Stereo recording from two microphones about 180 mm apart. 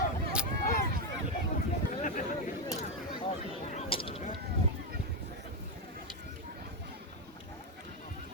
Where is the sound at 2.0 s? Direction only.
45° left (ahead or behind).